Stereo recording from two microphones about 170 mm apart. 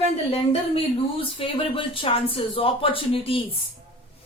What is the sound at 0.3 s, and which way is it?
A woman's voice, 35° left (ahead or behind).